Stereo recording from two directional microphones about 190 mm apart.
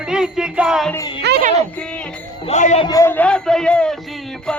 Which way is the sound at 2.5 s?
35° left (ahead or behind).